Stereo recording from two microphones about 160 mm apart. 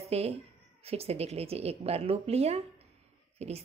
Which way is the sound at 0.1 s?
40° right (ahead or behind).